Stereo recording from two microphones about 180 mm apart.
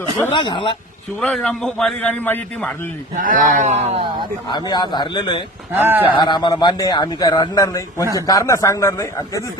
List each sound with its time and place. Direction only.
0.3 s a man's voice: 25° left (ahead or behind)
1.2 s a man's voice: 5° left (ahead or behind)
3.2 s speech: 50° right (ahead or behind)
4.4 s a man's voice: 25° left (ahead or behind)
5.7 s speech: 10° right (ahead or behind)
6.1 s a man's voice: 25° left (ahead or behind)